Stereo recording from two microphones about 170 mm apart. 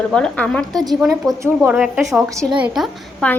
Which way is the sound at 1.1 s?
20° right (ahead or behind).